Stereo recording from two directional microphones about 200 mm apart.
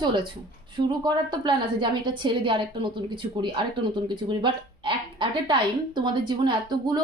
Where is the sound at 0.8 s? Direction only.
20° right (ahead or behind).